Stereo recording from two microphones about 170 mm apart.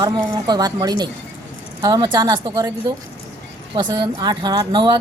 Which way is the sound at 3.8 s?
25° right (ahead or behind).